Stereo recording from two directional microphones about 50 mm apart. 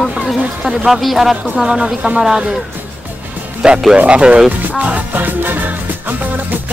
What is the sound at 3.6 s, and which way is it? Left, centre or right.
Speech, centre.